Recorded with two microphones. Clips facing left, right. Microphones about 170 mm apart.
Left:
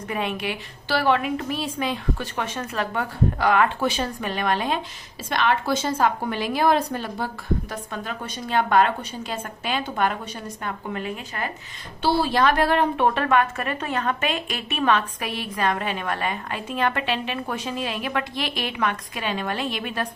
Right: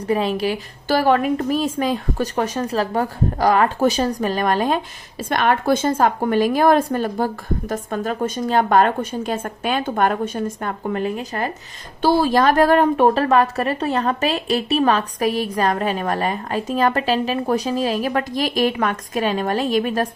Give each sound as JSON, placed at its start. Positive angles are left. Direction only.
{"t": 0.1, "sound": "a woman's voice", "side_deg": -35}